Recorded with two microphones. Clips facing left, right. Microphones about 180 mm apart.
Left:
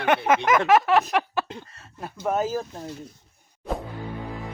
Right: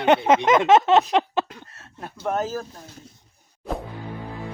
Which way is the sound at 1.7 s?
Centre (ahead or behind).